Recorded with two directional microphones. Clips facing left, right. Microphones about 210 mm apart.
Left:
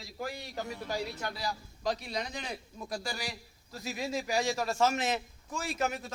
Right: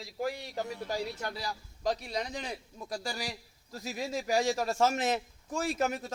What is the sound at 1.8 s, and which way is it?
A man's voice, 45° right (ahead or behind).